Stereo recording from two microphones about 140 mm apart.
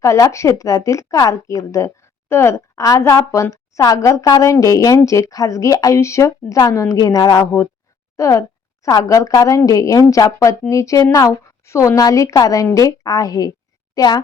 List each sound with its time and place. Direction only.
0.0 s a woman's voice: 20° left (ahead or behind)